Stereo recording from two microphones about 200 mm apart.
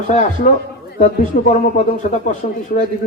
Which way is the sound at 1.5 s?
35° left (ahead or behind).